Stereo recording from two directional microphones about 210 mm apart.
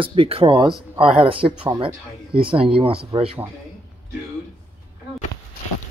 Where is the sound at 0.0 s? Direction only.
25° right (ahead or behind).